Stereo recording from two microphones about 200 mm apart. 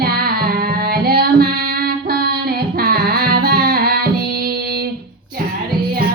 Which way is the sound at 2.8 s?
50° right (ahead or behind).